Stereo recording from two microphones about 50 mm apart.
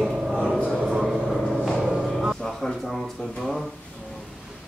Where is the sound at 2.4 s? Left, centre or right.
Centre.